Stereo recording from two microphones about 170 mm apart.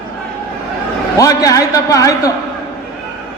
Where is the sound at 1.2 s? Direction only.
20° left (ahead or behind).